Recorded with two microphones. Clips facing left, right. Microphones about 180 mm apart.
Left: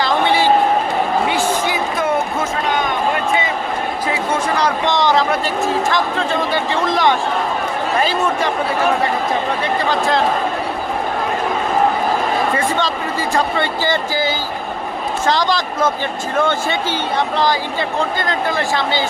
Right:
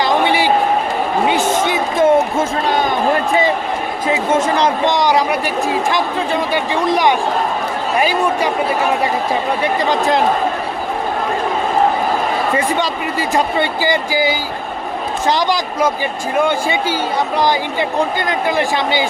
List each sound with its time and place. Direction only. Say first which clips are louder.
0.0 s a sound: right 1 dB; 15° right (ahead or behind); by 2.9 s 35° right (ahead or behind)
4.1 s speech: right 6 dB; 25° right (ahead or behind)
9.9 s speech: right 1 dB; 15° right (ahead or behind)
12.5 s speech: right 1 dB; 15° right (ahead or behind)